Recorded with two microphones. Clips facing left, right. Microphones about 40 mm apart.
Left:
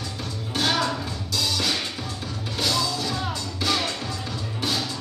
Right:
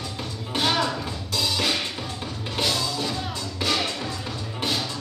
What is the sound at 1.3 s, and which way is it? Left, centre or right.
Music, right.